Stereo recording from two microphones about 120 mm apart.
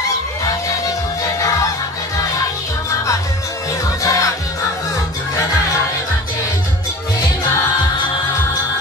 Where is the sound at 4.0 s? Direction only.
25° left (ahead or behind).